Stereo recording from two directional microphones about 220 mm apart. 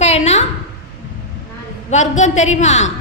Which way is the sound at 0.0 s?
30° left (ahead or behind).